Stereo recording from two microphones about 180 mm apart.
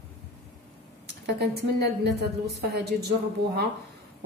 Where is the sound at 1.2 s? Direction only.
65° right (ahead or behind).